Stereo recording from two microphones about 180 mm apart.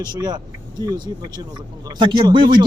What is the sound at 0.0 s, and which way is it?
Speech, 25° right (ahead or behind).